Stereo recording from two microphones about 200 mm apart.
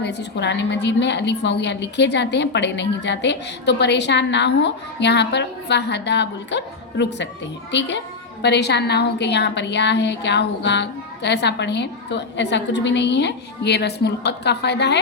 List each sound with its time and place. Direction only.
0.0 s a woman's voice: 60° left (ahead or behind)